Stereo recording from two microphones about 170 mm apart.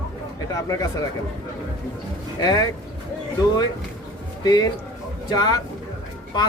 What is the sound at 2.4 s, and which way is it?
Speech, 25° left (ahead or behind).